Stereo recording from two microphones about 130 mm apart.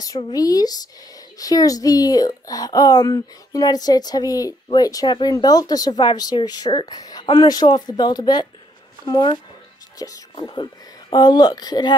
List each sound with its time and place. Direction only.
0.0 s a woman's voice: 30° left (ahead or behind)